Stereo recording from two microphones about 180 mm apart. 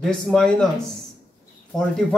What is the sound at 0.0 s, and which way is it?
Speech, 5° left (ahead or behind).